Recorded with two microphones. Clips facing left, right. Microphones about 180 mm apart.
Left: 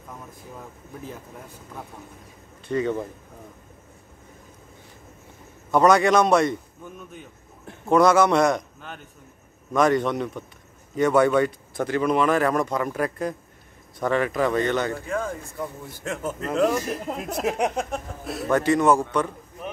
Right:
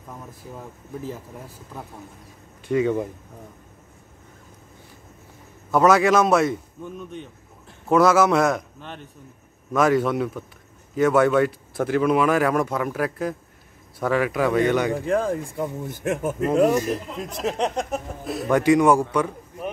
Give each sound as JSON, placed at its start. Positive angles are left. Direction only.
{"t": 2.7, "sound": "speech", "side_deg": -10}
{"t": 5.7, "sound": "speech", "side_deg": -5}
{"t": 15.0, "sound": "speech", "side_deg": -30}
{"t": 15.5, "sound": "speech", "side_deg": -20}
{"t": 17.2, "sound": "speech", "side_deg": 10}
{"t": 18.5, "sound": "a man's voice", "side_deg": -10}